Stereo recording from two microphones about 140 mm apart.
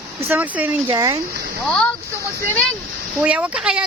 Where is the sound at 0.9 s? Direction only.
25° right (ahead or behind).